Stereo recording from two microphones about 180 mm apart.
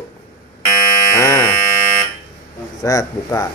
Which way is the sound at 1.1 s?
20° left (ahead or behind).